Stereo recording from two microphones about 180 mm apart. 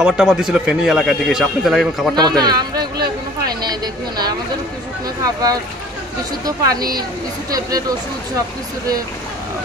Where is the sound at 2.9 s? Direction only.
60° right (ahead or behind).